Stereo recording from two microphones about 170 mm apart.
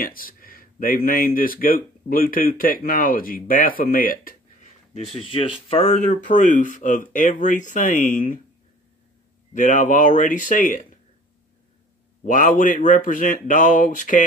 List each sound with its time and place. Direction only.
0.0 s speech: 55° left (ahead or behind)
5.7 s speech: 40° left (ahead or behind)
9.5 s speech: 50° left (ahead or behind)
12.2 s speech: 50° left (ahead or behind)